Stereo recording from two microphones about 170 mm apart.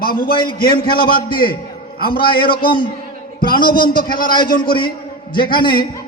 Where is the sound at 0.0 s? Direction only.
60° left (ahead or behind).